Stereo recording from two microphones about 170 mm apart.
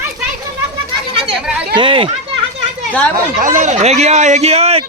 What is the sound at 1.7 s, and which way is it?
Speech, 30° right (ahead or behind).